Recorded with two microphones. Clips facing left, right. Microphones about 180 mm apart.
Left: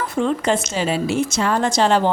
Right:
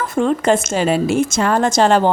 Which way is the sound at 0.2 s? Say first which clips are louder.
Right 4 dB; 50° right (ahead or behind).